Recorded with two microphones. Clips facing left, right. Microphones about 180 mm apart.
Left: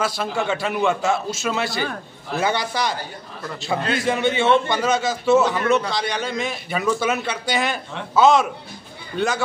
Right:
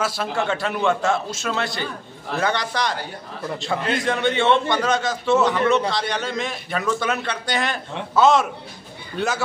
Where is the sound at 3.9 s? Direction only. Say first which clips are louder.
Left 1 dB; 5° left (ahead or behind).